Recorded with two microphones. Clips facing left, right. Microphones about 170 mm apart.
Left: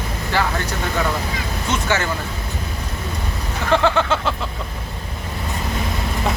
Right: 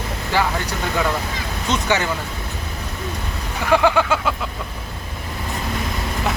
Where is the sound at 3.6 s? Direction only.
10° right (ahead or behind).